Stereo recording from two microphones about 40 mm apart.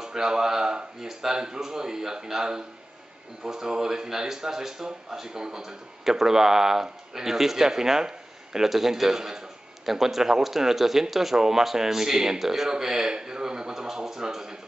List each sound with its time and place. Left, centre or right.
0.0 s speech: centre